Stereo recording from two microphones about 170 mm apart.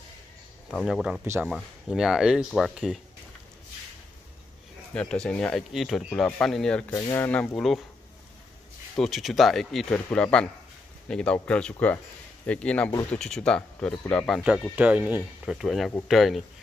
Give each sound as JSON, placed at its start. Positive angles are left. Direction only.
{"t": 0.7, "sound": "speech", "side_deg": 0}
{"t": 1.2, "sound": "speech", "side_deg": -15}
{"t": 1.5, "sound": "speech", "side_deg": -5}
{"t": 4.9, "sound": "speech", "side_deg": 5}
{"t": 6.9, "sound": "speech", "side_deg": 20}
{"t": 7.2, "sound": "speech", "side_deg": 5}
{"t": 8.9, "sound": "speech", "side_deg": 0}
{"t": 14.8, "sound": "speech", "side_deg": -10}